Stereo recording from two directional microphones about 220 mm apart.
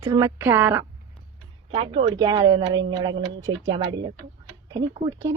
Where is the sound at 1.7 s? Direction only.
25° right (ahead or behind).